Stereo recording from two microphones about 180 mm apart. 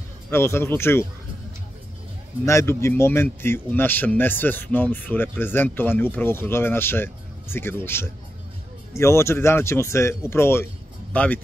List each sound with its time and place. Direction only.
0.3 s speech: 15° left (ahead or behind)
2.4 s speech: 15° left (ahead or behind)